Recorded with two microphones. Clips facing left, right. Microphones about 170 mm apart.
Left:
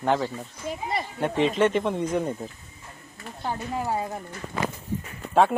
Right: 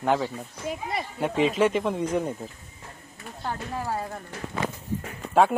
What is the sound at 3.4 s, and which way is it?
Speech, 15° left (ahead or behind).